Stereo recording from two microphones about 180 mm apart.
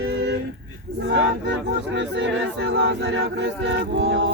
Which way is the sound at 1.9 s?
85° right.